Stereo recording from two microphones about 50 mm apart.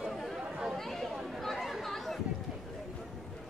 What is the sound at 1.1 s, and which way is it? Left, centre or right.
Chatter, centre.